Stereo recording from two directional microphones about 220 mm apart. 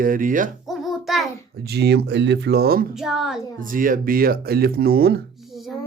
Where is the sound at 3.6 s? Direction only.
40° right (ahead or behind).